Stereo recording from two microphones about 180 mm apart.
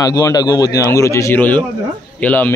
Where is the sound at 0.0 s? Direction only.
20° left (ahead or behind).